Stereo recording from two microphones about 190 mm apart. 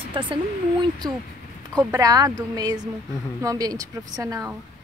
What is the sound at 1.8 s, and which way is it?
A woman's voice, 15° right (ahead or behind).